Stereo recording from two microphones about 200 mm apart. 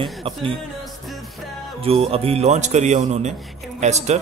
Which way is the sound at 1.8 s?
30° right (ahead or behind).